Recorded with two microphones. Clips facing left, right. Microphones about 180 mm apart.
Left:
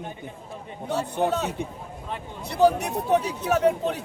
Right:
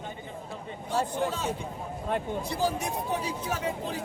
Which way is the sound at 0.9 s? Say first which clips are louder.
Left 4 dB; 65° left (ahead or behind).